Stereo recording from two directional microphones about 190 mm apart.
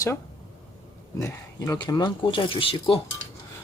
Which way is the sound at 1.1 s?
15° left (ahead or behind).